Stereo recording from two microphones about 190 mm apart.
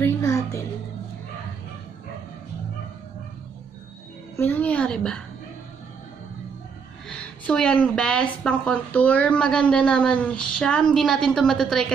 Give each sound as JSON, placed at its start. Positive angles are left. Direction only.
{"t": 0.0, "sound": "music", "side_deg": 15}
{"t": 4.4, "sound": "a woman's voice", "side_deg": 10}
{"t": 7.1, "sound": "a woman's voice", "side_deg": 5}